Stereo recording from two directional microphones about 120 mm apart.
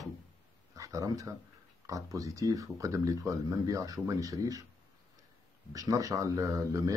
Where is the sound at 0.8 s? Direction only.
30° right (ahead or behind).